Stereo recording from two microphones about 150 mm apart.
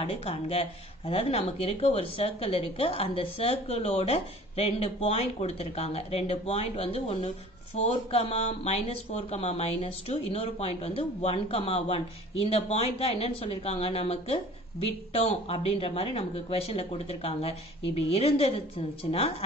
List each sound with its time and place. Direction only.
0.0 s speech: 40° left (ahead or behind)